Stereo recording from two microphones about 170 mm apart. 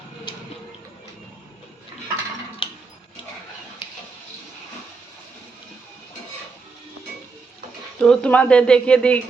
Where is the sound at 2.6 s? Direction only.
30° left (ahead or behind).